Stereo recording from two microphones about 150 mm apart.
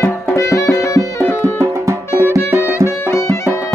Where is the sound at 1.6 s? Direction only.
20° right (ahead or behind).